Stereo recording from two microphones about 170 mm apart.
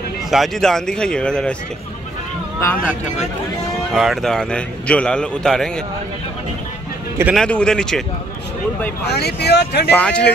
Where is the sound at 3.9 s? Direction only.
Centre (ahead or behind).